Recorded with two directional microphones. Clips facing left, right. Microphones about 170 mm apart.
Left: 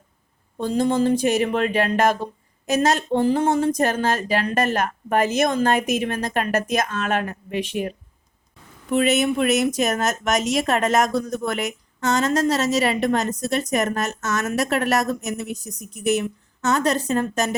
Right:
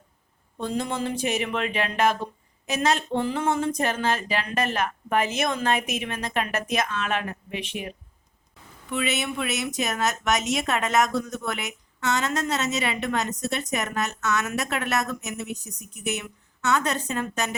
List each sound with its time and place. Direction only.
0.6 s a woman's voice: 35° left (ahead or behind)